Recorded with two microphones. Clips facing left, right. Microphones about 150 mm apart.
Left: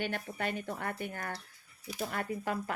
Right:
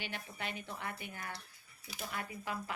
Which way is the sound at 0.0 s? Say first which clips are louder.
Left 8 dB; 50° left (ahead or behind).